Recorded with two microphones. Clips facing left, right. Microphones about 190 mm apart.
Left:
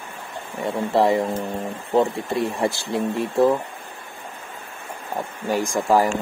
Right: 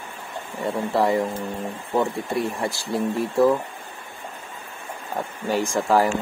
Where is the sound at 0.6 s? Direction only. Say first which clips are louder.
Left 2 dB; 20° left (ahead or behind).